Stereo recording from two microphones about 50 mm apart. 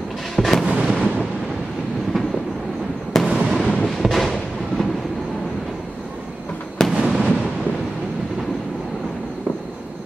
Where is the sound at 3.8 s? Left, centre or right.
Centre.